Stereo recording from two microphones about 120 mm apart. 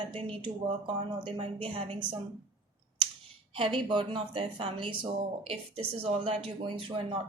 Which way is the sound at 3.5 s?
45° right (ahead or behind).